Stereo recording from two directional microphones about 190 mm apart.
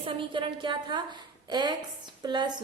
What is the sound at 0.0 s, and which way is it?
A woman's voice, 25° right (ahead or behind).